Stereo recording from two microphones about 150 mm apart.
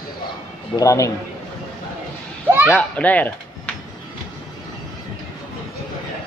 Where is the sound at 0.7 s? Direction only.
20° left (ahead or behind).